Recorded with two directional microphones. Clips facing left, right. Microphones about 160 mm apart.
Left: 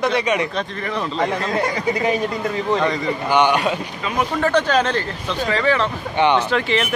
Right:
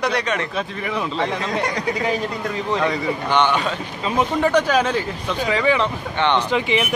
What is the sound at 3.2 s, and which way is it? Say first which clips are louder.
Speech: left 3 dB; 10° left (ahead or behind).